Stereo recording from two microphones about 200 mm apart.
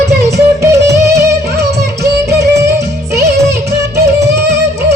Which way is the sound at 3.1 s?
55° right (ahead or behind).